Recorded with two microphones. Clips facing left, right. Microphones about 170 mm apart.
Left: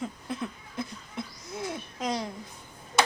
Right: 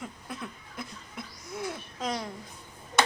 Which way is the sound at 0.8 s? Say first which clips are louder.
Left 6 dB; 25° left (ahead or behind).